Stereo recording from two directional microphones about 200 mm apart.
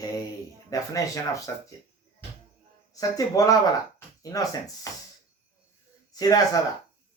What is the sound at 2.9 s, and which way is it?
Speech, 15° left (ahead or behind).